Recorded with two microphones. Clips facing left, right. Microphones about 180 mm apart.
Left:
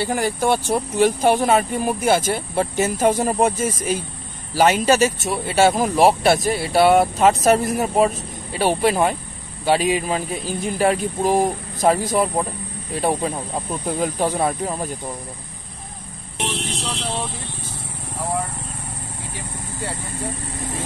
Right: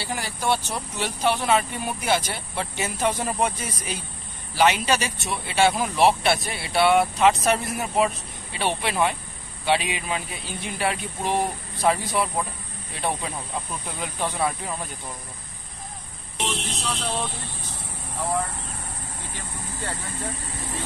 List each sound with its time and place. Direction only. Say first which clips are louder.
0.0 s speech: left 8 dB; 50° left (ahead or behind)